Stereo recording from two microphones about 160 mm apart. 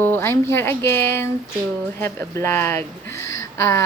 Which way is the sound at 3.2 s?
20° left (ahead or behind).